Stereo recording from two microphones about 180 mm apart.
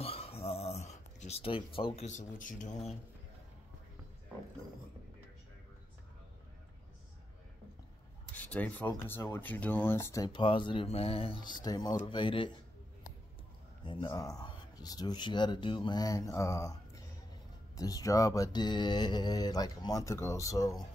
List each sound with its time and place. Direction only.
0.0 s a sound: 35° left (ahead or behind)
8.4 s speech: 10° left (ahead or behind); by 12.5 s 25° left (ahead or behind)
13.8 s speech: 25° left (ahead or behind)